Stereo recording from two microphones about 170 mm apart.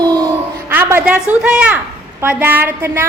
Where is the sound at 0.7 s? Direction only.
10° right (ahead or behind).